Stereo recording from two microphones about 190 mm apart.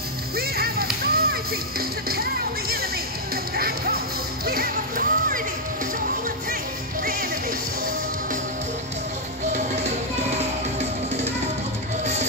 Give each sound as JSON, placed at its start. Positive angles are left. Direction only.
{"t": 0.4, "sound": "music", "side_deg": -55}
{"t": 3.5, "sound": "music", "side_deg": -55}
{"t": 10.3, "sound": "music", "side_deg": -35}